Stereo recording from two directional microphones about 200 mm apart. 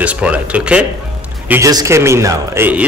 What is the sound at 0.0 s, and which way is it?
Speech, 5° right (ahead or behind).